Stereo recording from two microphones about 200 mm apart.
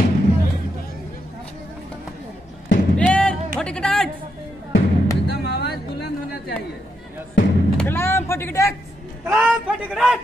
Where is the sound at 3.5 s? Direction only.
5° left (ahead or behind).